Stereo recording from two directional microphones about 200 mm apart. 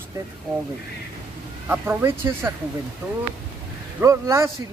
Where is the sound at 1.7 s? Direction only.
10° right (ahead or behind).